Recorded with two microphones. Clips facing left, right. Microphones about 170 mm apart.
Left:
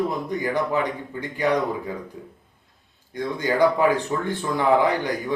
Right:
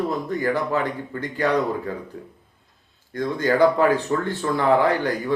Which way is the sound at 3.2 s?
15° left (ahead or behind).